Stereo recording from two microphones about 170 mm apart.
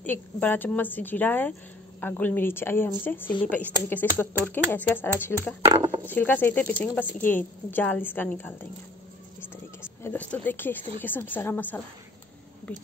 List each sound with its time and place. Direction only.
0.0 s a woman's voice: 10° left (ahead or behind)
5.7 s speech: 25° right (ahead or behind)
6.0 s a woman's voice: 10° left (ahead or behind)
9.8 s a woman's voice: 10° left (ahead or behind)